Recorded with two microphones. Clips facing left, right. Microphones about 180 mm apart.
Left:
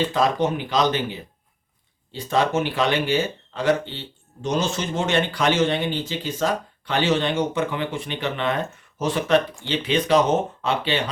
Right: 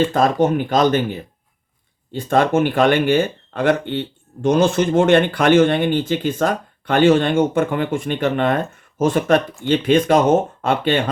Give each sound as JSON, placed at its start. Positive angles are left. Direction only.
{"t": 0.0, "sound": "speech", "side_deg": -50}